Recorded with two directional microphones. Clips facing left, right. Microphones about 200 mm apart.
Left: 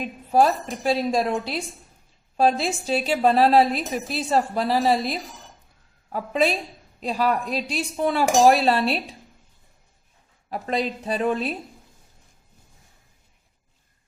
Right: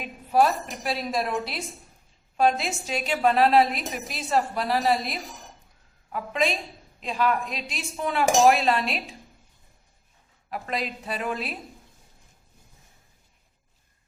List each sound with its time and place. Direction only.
0.3 s a woman's voice: 30° left (ahead or behind)
10.5 s a woman's voice: 30° left (ahead or behind)